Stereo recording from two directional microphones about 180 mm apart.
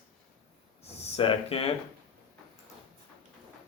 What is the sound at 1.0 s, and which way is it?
Speech, 30° left (ahead or behind).